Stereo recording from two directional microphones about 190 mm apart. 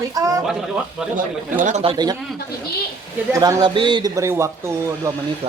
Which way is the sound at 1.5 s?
40° right (ahead or behind).